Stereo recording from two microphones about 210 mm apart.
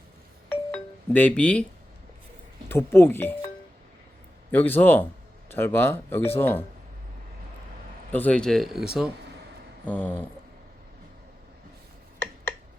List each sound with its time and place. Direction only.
0.5 s music: 10° left (ahead or behind)
2.6 s speech: 10° left (ahead or behind)
4.5 s speech: 10° left (ahead or behind)
8.1 s speech: 5° left (ahead or behind)